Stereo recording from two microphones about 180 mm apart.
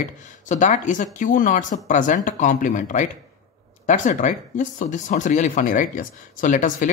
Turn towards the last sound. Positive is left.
turn(degrees=45)  # may be behind; listen again after turning